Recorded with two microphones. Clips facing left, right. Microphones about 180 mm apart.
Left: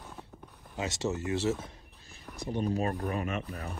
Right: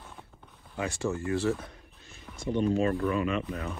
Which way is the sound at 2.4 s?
70° right (ahead or behind).